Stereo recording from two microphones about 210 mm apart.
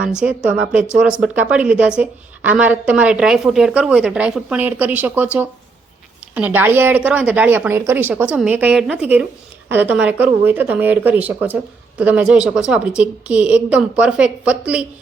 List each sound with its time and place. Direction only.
0.2 s a woman's voice: 5° right (ahead or behind)